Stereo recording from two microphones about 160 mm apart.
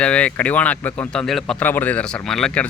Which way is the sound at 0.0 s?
5° left (ahead or behind).